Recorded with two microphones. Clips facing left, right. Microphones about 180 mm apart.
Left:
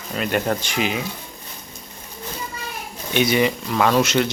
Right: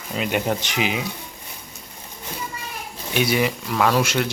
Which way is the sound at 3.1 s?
5° right (ahead or behind).